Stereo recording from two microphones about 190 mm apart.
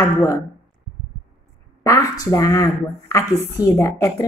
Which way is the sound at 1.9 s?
15° left (ahead or behind).